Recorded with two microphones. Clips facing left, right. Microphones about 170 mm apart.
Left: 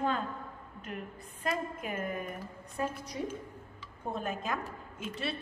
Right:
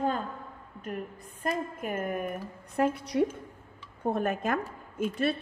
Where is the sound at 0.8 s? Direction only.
45° right (ahead or behind).